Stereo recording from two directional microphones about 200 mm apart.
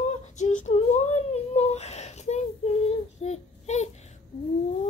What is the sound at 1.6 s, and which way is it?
Child singing, 35° left (ahead or behind).